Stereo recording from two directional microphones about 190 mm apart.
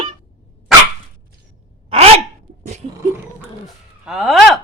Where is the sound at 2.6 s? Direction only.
40° right (ahead or behind).